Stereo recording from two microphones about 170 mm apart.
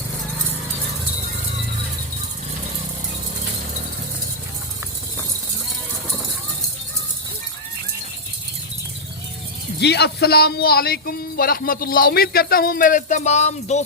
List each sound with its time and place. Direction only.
9.8 s speech: 75° left (ahead or behind); by 13.8 s 40° left (ahead or behind)